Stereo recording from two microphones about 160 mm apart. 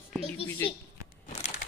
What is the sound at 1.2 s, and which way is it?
Crumpling, 45° left (ahead or behind).